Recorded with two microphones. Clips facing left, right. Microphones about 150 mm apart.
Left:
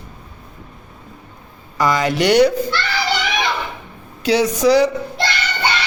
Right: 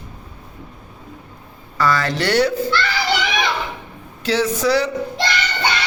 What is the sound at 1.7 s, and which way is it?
Speech, 15° left (ahead or behind).